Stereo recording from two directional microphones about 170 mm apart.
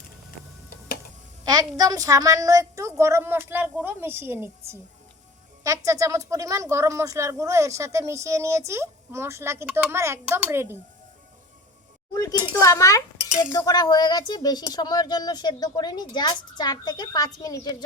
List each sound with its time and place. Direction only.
1.5 s a woman's voice: 25° right (ahead or behind)
12.1 s speech: 20° left (ahead or behind)